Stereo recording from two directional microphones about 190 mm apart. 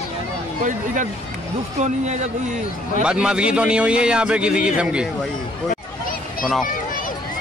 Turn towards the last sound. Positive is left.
turn(degrees=45)  # may be behind; listen again after turning